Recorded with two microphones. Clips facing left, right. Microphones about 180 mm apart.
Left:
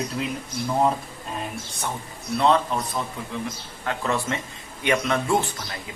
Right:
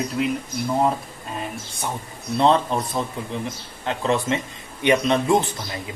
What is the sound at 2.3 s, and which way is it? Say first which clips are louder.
Speech: right 2 dB; 30° right (ahead or behind).